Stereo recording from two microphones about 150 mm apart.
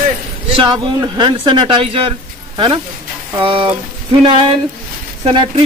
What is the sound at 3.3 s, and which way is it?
Speech, 35° right (ahead or behind).